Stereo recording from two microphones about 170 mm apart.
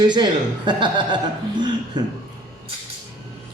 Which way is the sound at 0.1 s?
25° right (ahead or behind).